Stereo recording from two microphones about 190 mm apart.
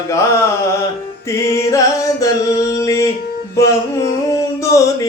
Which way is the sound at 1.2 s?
15° left (ahead or behind).